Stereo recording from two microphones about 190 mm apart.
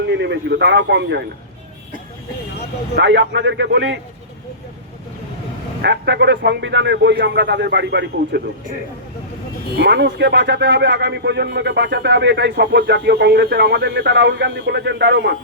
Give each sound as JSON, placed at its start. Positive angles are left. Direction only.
{"t": 0.1, "sound": "speech", "side_deg": -65}
{"t": 2.9, "sound": "a man's voice", "side_deg": -70}
{"t": 5.8, "sound": "speech", "side_deg": -65}